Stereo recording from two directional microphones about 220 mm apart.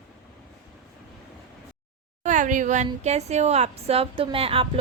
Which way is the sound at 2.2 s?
35° right (ahead or behind).